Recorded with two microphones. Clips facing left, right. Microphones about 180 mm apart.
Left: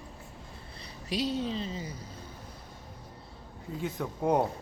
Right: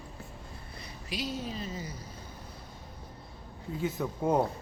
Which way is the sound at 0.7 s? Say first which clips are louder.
Left 5 dB; 35° left (ahead or behind).